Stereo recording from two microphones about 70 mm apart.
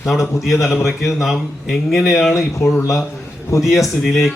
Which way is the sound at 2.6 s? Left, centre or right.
Left.